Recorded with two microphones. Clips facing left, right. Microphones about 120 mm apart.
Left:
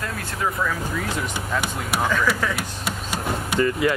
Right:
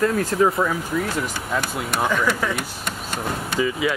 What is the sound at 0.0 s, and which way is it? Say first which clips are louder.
Speech: right 9 dB; 40° right (ahead or behind).